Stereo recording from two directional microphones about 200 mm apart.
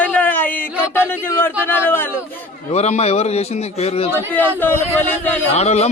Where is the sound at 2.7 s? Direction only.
35° left (ahead or behind).